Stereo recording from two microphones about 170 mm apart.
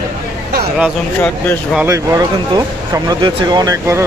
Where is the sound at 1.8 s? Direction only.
20° right (ahead or behind).